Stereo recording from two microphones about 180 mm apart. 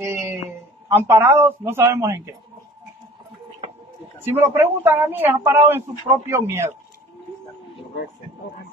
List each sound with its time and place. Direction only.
0.0 s a sound: 15° right (ahead or behind)
0.8 s speech: 10° right (ahead or behind)
4.2 s speech: 10° right (ahead or behind)